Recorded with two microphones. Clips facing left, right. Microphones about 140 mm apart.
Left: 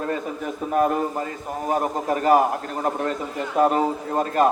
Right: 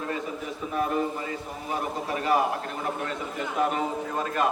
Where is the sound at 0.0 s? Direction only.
45° left (ahead or behind).